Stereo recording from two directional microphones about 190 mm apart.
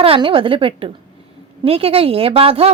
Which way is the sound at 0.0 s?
30° right (ahead or behind).